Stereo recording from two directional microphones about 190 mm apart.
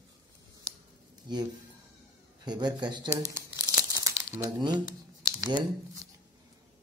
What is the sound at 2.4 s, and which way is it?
Speech, 20° right (ahead or behind).